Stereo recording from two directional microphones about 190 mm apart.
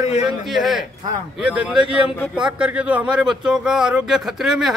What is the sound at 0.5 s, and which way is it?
A man's voice, centre (ahead or behind).